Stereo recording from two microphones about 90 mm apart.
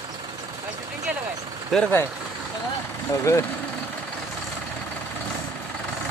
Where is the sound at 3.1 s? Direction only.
35° left (ahead or behind).